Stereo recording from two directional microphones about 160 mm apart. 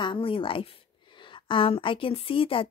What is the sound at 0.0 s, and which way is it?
Speech, 35° left (ahead or behind).